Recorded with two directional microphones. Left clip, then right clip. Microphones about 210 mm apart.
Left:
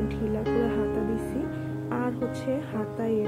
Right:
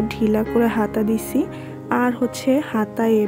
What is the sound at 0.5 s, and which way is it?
Speech, 50° right (ahead or behind).